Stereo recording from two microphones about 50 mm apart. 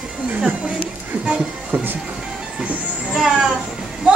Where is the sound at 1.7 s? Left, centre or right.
Right.